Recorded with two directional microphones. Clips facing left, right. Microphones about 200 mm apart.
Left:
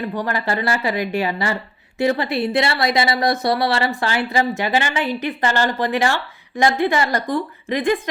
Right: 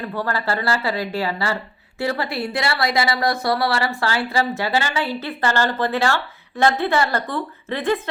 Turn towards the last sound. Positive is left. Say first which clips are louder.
# left 2 dB
turn(degrees=15)  # may be behind; listen again after turning